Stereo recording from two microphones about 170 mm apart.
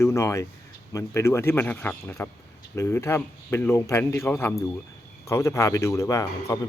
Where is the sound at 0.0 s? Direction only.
15° left (ahead or behind).